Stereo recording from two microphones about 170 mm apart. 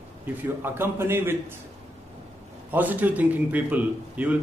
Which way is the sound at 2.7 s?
10° right (ahead or behind).